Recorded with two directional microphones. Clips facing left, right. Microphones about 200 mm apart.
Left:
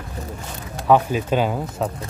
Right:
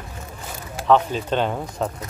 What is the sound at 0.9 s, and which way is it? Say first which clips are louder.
Speech: left 1 dB; 10° left (ahead or behind).